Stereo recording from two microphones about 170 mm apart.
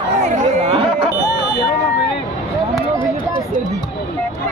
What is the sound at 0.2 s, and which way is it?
Chatter, 45° right (ahead or behind).